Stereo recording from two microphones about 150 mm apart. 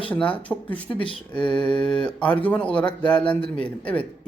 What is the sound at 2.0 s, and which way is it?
Speech, 5° left (ahead or behind).